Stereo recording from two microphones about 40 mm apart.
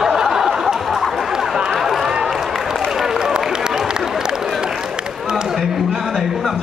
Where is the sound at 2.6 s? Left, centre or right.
Centre.